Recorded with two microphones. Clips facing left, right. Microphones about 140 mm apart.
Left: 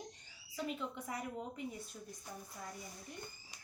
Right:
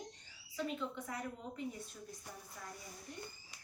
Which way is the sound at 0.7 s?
10° left (ahead or behind).